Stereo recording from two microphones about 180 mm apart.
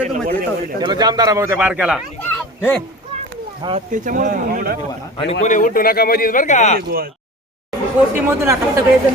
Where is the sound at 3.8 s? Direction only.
45° right (ahead or behind).